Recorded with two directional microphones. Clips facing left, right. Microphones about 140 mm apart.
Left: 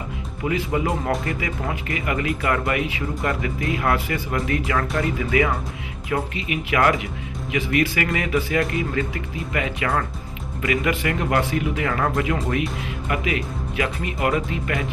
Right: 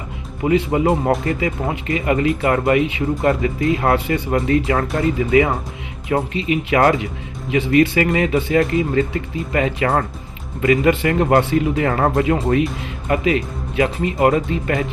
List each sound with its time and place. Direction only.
0.4 s speech: 30° right (ahead or behind)